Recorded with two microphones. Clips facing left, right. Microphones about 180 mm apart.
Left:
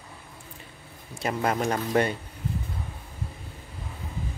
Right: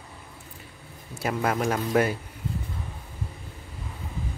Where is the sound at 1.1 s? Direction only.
Centre (ahead or behind).